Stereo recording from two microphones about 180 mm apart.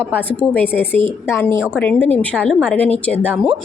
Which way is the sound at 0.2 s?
10° left (ahead or behind).